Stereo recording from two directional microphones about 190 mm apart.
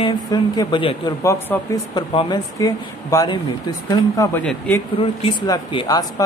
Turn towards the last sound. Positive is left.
turn(degrees=20)  # may be behind; listen again after turning